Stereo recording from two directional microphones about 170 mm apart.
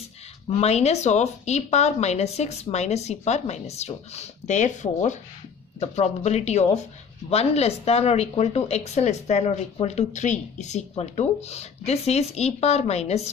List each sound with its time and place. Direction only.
0.5 s speech: 40° left (ahead or behind)